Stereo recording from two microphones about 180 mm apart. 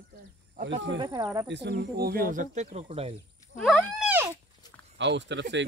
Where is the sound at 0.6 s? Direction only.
80° right.